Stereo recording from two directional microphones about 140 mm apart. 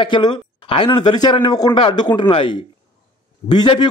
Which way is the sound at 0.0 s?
35° left (ahead or behind).